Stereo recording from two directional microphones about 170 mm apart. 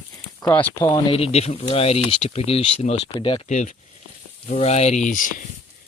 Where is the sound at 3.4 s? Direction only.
45° left (ahead or behind).